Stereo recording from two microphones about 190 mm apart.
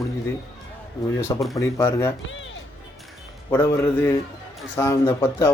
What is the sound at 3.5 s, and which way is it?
Speech, 15° left (ahead or behind).